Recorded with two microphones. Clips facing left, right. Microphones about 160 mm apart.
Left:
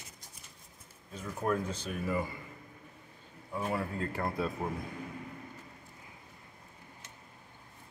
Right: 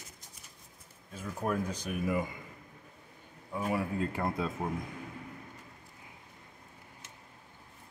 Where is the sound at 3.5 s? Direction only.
10° right (ahead or behind).